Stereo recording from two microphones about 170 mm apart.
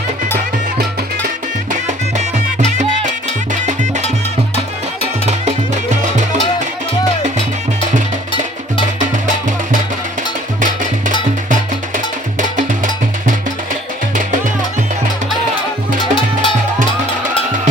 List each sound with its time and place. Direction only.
2.1 s music: 45° right (ahead or behind)
7.2 s music: 40° right (ahead or behind)
12.4 s music: 50° right (ahead or behind)
16.0 s music: 30° left (ahead or behind)